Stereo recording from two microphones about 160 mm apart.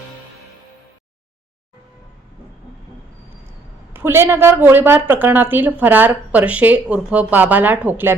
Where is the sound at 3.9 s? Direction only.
15° right (ahead or behind).